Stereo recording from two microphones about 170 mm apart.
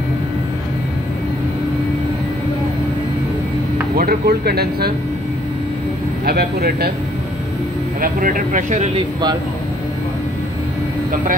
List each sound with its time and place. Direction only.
3.9 s speech: 60° right (ahead or behind)
6.2 s speech: 65° right (ahead or behind)
8.0 s speech: 55° right (ahead or behind)